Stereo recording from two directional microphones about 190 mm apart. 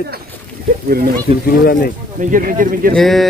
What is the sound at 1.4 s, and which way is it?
Speech, 50° left (ahead or behind).